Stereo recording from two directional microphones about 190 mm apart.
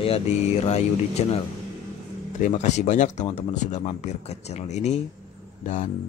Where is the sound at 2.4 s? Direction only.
40° left (ahead or behind).